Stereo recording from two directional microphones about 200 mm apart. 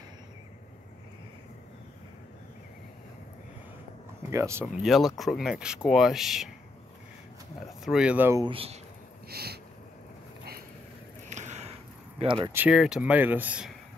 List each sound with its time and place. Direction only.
4.3 s speech: 15° right (ahead or behind)
4.8 s speech: centre (ahead or behind)
7.8 s speech: 5° right (ahead or behind)
8.5 s speech: 30° right (ahead or behind)
9.3 s a sound: 50° right (ahead or behind)
11.2 s sniff: 35° right (ahead or behind)
12.5 s speech: 5° right (ahead or behind)